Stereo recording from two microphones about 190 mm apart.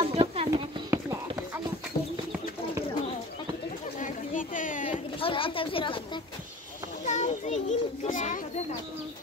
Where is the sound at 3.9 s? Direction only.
45° left (ahead or behind).